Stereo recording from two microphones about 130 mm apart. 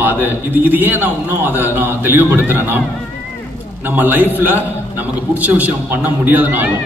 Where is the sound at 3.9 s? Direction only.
15° right (ahead or behind).